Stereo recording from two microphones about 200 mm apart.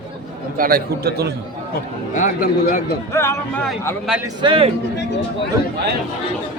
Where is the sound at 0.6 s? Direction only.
50° right (ahead or behind).